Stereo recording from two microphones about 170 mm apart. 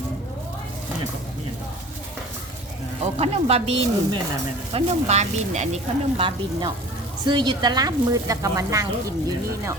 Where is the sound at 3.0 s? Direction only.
40° right (ahead or behind); by 9.7 s 20° right (ahead or behind).